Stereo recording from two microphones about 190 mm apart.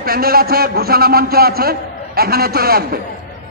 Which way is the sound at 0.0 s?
50° right (ahead or behind).